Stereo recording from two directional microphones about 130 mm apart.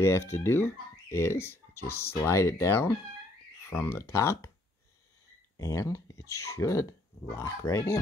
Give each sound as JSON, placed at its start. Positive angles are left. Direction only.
{"t": 0.0, "sound": "speech", "side_deg": 20}
{"t": 5.6, "sound": "speech", "side_deg": 25}